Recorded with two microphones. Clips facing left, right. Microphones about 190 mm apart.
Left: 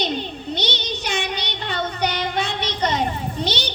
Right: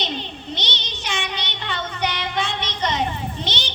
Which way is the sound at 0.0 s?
45° left (ahead or behind).